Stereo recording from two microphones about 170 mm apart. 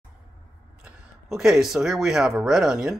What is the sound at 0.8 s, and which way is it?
Speech, 5° right (ahead or behind).